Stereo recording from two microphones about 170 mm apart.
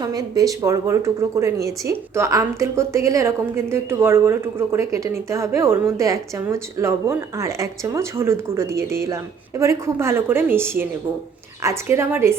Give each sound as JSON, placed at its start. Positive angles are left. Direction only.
{"t": 0.0, "sound": "a woman's voice", "side_deg": -20}